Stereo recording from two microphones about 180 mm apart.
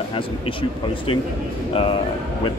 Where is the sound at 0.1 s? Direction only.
30° left (ahead or behind).